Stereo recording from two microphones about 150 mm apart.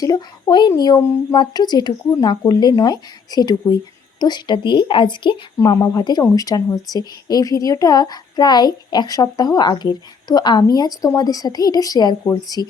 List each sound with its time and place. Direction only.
0.0 s a woman's voice: 25° left (ahead or behind)